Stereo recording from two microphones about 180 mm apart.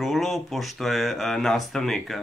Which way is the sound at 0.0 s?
Centre (ahead or behind).